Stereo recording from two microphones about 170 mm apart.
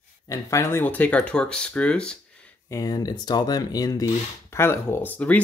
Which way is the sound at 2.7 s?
20° left (ahead or behind).